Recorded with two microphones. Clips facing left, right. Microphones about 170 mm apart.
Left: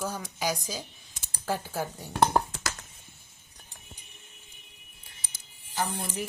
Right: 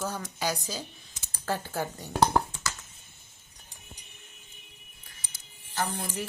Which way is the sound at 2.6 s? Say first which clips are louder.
Left 1 dB; 50° left (ahead or behind).